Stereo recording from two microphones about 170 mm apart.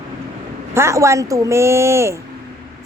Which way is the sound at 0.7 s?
15° right (ahead or behind).